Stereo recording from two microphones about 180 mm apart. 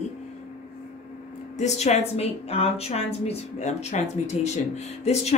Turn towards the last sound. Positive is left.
turn(degrees=35)  # may be behind; listen again after turning